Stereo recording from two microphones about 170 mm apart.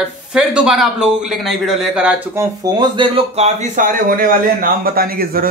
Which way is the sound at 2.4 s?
25° right (ahead or behind).